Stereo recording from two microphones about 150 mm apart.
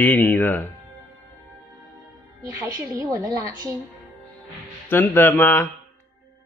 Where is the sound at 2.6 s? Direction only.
20° right (ahead or behind).